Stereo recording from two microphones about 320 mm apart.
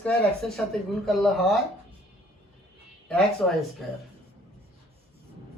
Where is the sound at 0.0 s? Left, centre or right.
Centre.